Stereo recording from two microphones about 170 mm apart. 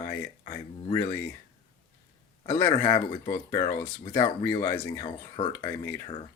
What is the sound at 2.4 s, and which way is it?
Speech, 25° left (ahead or behind).